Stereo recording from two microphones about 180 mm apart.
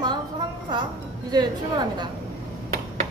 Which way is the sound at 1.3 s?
25° right (ahead or behind).